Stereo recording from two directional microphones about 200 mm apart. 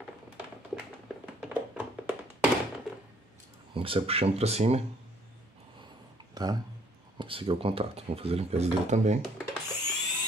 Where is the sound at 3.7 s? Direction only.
25° right (ahead or behind).